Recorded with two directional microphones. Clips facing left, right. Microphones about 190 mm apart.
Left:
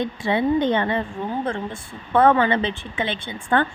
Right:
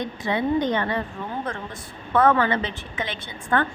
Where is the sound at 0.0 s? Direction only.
25° left (ahead or behind).